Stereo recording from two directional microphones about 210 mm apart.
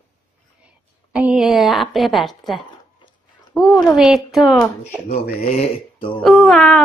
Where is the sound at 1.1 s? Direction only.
5° right (ahead or behind).